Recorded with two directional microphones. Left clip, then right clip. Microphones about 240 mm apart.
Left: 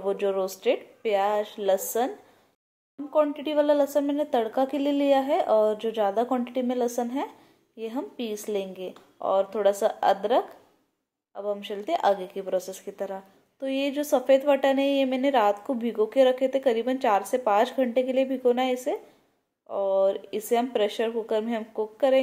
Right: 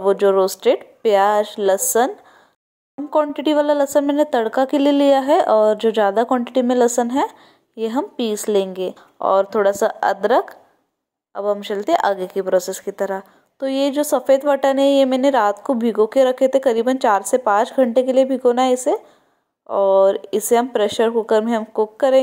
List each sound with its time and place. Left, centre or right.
0.0 s speech: right